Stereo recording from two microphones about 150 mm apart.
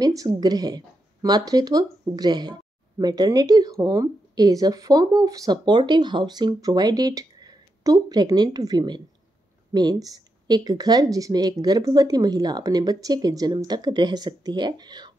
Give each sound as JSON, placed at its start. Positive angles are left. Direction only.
{"t": 0.0, "sound": "speech", "side_deg": -25}